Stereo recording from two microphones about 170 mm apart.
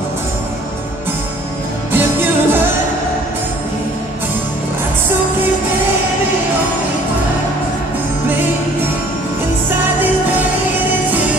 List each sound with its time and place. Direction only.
1.9 s music: 10° right (ahead or behind)